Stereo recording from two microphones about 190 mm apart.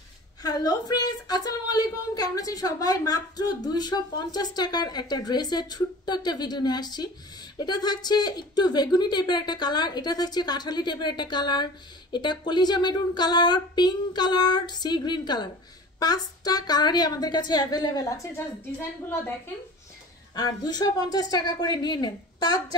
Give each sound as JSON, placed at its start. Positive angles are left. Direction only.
{"t": 0.4, "sound": "speech", "side_deg": 20}
{"t": 20.3, "sound": "speech", "side_deg": 20}